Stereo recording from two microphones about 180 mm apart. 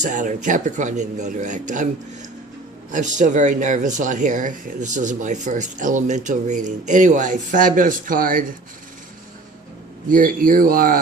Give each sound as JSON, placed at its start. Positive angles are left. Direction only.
{"t": 0.0, "sound": "speech", "side_deg": -45}
{"t": 2.9, "sound": "speech", "side_deg": -40}
{"t": 10.1, "sound": "speech", "side_deg": -50}